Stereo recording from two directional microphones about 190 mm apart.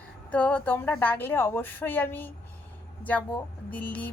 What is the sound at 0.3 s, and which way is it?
A woman's voice, 5° left (ahead or behind).